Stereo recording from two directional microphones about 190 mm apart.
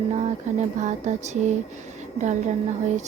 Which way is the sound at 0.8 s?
40° right (ahead or behind).